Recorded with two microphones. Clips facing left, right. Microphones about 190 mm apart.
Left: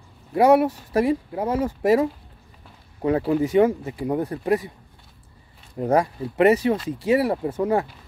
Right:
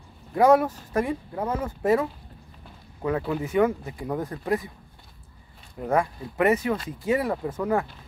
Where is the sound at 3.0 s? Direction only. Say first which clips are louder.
Left 6 dB; 35° left (ahead or behind).